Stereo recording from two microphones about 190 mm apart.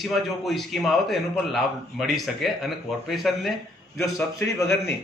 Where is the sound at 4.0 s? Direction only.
15° left (ahead or behind).